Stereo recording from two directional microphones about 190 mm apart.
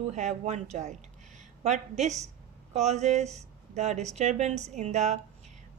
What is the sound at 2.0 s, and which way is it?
A woman's voice, 35° right (ahead or behind).